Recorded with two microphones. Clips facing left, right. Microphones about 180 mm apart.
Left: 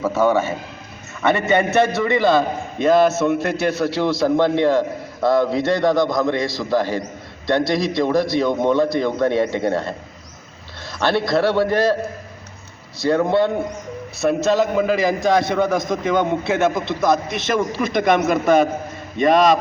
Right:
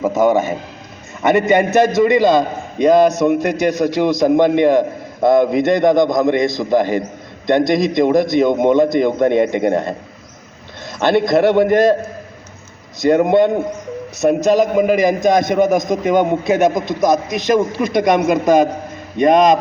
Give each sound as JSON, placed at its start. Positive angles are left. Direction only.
{"t": 0.0, "sound": "a man's voice", "side_deg": -15}
{"t": 11.3, "sound": "a man's voice", "side_deg": -20}
{"t": 13.0, "sound": "a man's voice", "side_deg": -20}